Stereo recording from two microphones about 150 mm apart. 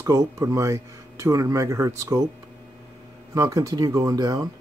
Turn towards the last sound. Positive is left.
turn(degrees=-25)  # may be behind; listen again after turning